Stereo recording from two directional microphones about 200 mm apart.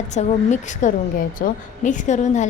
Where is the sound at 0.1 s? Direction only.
35° left (ahead or behind).